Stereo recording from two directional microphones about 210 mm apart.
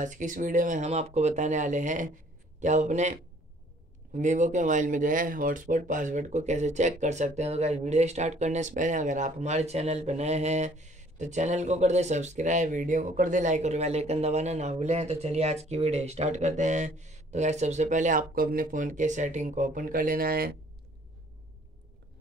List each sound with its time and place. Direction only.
0.0 s speech: 35° right (ahead or behind)